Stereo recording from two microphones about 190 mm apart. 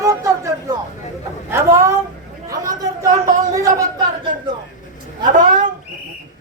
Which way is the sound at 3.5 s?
15° right (ahead or behind).